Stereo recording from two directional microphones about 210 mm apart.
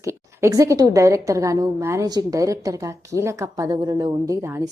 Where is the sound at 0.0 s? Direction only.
15° right (ahead or behind).